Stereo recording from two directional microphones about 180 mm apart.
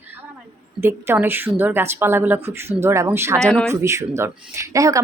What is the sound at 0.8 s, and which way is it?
Speech, 15° right (ahead or behind).